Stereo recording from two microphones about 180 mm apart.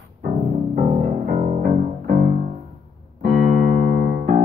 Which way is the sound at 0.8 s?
40° right (ahead or behind).